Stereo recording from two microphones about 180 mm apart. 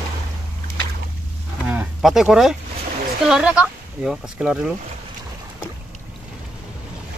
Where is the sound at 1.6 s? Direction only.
10° right (ahead or behind).